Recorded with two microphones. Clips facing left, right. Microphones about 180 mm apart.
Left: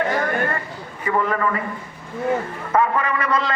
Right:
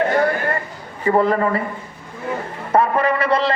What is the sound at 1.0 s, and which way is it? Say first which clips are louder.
Speech: right 5 dB; 35° right (ahead or behind).